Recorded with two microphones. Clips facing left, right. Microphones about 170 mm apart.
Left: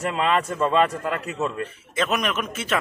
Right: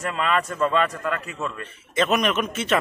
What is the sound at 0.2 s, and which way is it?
A man's voice, 25° left (ahead or behind).